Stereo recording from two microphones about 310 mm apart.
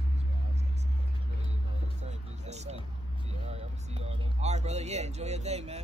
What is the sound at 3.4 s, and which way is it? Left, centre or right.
Speech, centre.